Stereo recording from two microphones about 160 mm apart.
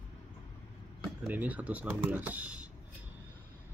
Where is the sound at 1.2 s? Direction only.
10° right (ahead or behind).